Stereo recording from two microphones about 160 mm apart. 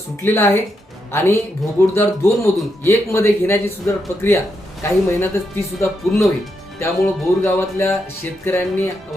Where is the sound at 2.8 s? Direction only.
15° left (ahead or behind).